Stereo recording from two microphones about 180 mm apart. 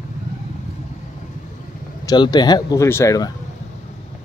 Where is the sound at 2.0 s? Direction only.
25° left (ahead or behind).